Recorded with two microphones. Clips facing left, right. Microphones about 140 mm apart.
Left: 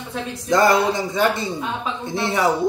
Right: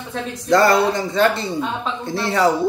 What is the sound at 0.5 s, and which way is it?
Speech, 20° left (ahead or behind).